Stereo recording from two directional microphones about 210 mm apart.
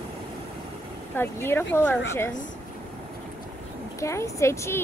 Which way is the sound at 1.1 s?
10° left (ahead or behind).